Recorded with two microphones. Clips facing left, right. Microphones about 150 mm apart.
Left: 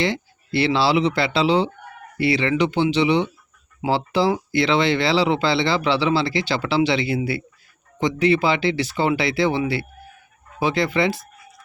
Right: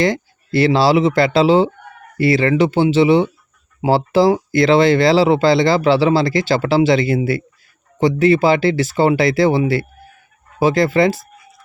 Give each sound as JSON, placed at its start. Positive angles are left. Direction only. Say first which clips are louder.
{"t": 0.0, "sound": "speech", "louder": "right 6 dB", "side_deg": -40}